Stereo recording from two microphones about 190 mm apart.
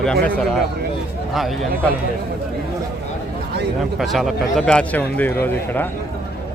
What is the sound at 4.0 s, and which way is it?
A man's voice, centre (ahead or behind).